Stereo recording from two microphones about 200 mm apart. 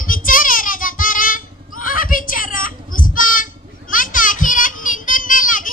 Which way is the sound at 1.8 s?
45° left (ahead or behind).